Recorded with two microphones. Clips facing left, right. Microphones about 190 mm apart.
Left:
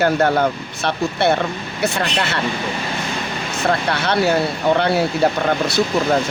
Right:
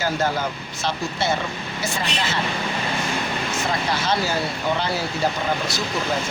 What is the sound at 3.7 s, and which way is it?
Speech, 65° left (ahead or behind).